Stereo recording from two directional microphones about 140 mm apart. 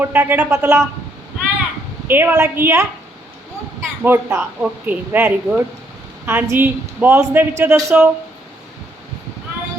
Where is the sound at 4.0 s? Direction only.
20° right (ahead or behind).